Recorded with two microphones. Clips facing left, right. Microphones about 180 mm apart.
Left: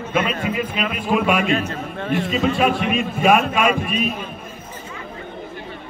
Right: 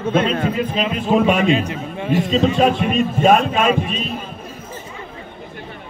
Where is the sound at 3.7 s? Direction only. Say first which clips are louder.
Right 2 dB; 10° left (ahead or behind).